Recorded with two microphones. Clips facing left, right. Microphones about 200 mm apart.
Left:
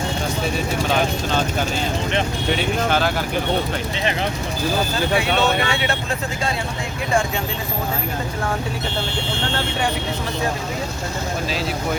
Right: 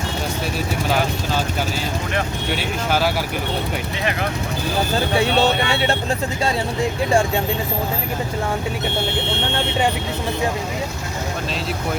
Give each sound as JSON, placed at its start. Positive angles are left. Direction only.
{"t": 2.5, "sound": "speech", "side_deg": -5}
{"t": 5.1, "sound": "speech", "side_deg": -40}
{"t": 9.4, "sound": "speech", "side_deg": -20}